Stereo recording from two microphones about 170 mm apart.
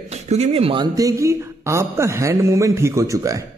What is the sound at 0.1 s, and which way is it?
Speech, 40° right (ahead or behind).